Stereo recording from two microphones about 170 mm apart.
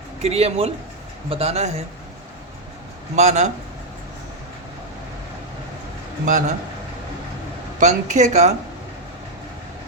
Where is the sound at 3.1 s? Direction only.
45° right (ahead or behind).